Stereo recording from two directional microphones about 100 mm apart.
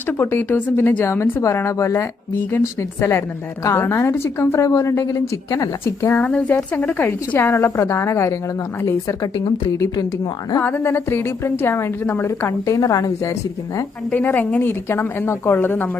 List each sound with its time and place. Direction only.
0.2 s a woman's voice: 20° left (ahead or behind)
6.2 s a woman's voice: 15° left (ahead or behind); by 10.1 s 30° left (ahead or behind)
10.6 s a woman's voice: 20° left (ahead or behind); by 13.3 s 35° left (ahead or behind)
14.1 s a woman's voice: 15° left (ahead or behind)